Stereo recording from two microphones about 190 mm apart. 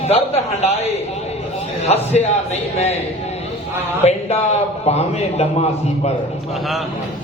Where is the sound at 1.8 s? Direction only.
35° left (ahead or behind).